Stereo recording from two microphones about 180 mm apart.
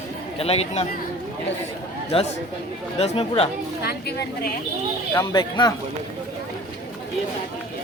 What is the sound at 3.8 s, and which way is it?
Speech, 60° left (ahead or behind).